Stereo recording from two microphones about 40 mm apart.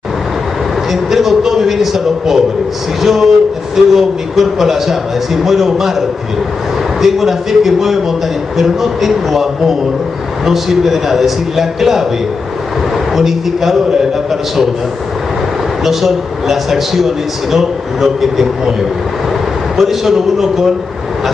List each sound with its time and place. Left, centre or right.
1.1 s a man's voice: centre
13.1 s speech: centre
15.8 s speech: centre
19.8 s a man's voice: centre